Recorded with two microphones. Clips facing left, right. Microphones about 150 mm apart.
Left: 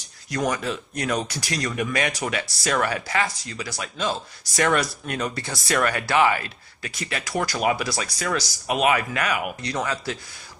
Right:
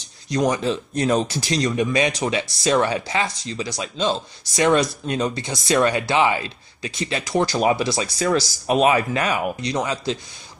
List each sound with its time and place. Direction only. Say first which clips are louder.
0.3 s speech: right 5 dB; 20° right (ahead or behind)
9.6 s speech: right 3 dB; 20° right (ahead or behind)